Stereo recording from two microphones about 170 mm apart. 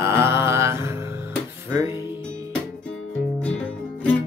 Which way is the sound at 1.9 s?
25° left (ahead or behind).